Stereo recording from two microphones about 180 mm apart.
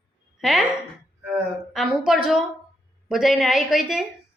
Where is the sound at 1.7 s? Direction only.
Centre (ahead or behind).